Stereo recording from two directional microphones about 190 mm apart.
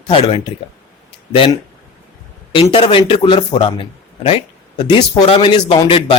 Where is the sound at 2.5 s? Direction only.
30° left (ahead or behind).